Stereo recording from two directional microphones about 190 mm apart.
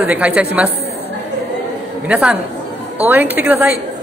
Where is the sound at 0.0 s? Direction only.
5° right (ahead or behind).